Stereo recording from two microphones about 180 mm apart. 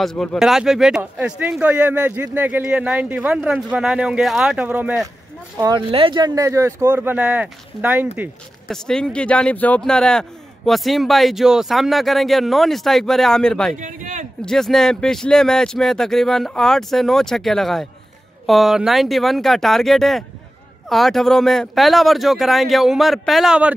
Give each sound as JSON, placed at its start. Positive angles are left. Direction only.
{"t": 0.0, "sound": "a man's voice", "side_deg": 0}
{"t": 5.6, "sound": "speech", "side_deg": -25}
{"t": 8.6, "sound": "a man's voice", "side_deg": 5}
{"t": 13.7, "sound": "speech", "side_deg": -45}
{"t": 14.4, "sound": "a man's voice", "side_deg": 5}